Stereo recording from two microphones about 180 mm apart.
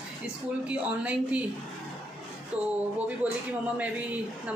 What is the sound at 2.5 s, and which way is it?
A woman's voice, 5° right (ahead or behind).